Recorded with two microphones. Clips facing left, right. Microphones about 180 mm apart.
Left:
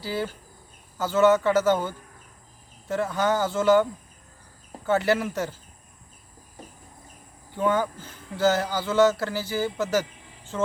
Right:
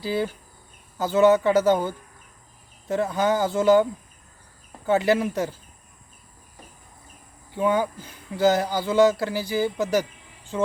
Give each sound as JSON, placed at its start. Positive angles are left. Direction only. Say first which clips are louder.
{"t": 0.0, "sound": "speech", "louder": "right 4 dB", "side_deg": -15}
{"t": 4.9, "sound": "speech", "louder": "right 2 dB", "side_deg": -15}
{"t": 7.5, "sound": "speech", "louder": "right 2 dB", "side_deg": -15}